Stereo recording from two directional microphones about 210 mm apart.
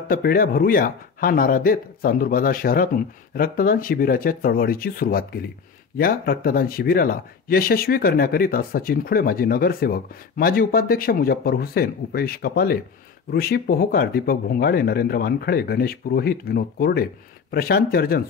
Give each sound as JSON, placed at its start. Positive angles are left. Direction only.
{"t": 0.1, "sound": "speech", "side_deg": 45}